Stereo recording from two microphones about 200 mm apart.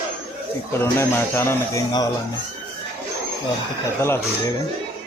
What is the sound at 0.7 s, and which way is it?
A man's voice, 10° left (ahead or behind).